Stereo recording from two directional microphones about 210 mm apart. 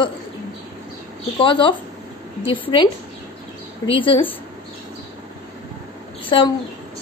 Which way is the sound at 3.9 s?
25° left (ahead or behind).